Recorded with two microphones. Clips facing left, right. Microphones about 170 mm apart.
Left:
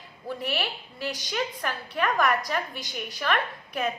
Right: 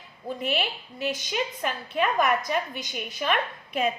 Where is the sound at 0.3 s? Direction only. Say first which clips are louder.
Right 2 dB; 20° right (ahead or behind).